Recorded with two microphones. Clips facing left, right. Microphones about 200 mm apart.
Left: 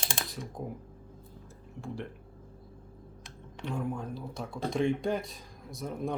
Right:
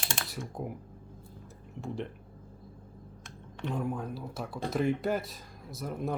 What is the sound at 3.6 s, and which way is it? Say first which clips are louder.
Speech: right 2 dB; 20° right (ahead or behind).